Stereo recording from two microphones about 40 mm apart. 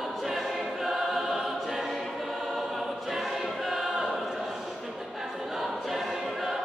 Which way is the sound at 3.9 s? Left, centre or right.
Centre.